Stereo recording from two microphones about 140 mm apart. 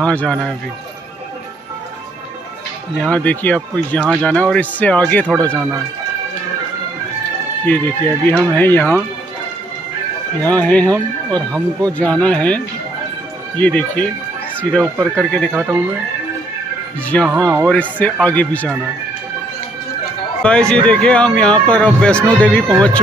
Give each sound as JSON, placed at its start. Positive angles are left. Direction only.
{"t": 0.0, "sound": "speech", "side_deg": 10}
{"t": 3.0, "sound": "speech", "side_deg": 10}
{"t": 5.5, "sound": "speech", "side_deg": -15}
{"t": 7.6, "sound": "speech", "side_deg": 10}
{"t": 10.4, "sound": "speech", "side_deg": 10}
{"t": 15.5, "sound": "speech", "side_deg": -15}
{"t": 17.1, "sound": "speech", "side_deg": 10}
{"t": 20.4, "sound": "speech", "side_deg": 5}